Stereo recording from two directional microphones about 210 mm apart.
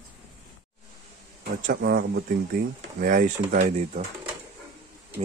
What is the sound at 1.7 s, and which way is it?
Speech, 45° right (ahead or behind).